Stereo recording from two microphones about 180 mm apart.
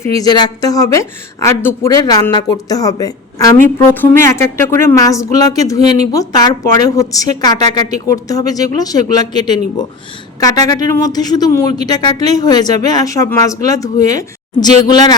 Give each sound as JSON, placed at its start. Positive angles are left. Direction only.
{"t": 0.0, "sound": "a woman's voice", "side_deg": 20}